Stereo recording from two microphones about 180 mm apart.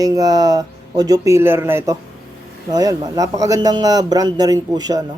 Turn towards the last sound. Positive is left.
turn(degrees=-20)  # may be behind; listen again after turning